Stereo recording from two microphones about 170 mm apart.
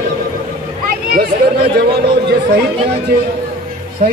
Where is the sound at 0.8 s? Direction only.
65° right (ahead or behind).